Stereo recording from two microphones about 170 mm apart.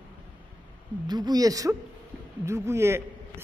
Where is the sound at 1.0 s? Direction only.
25° right (ahead or behind).